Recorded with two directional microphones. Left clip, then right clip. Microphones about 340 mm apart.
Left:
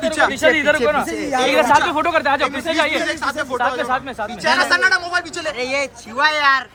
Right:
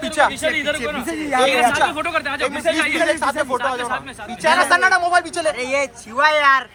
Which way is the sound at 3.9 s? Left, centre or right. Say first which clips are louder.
Left 5 dB; centre.